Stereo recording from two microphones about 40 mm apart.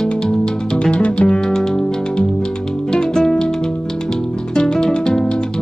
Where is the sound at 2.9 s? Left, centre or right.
Centre.